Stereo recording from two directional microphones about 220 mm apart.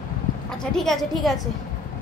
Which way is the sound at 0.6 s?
Centre (ahead or behind).